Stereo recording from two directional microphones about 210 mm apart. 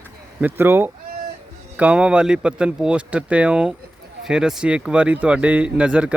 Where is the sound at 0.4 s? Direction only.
10° right (ahead or behind).